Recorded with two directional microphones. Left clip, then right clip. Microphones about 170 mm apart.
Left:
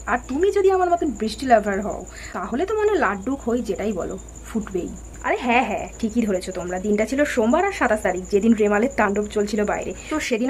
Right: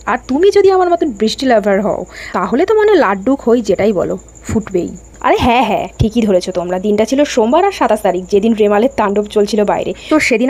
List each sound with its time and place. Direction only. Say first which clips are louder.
0.0 s a woman's voice: right 9 dB; 45° right (ahead or behind)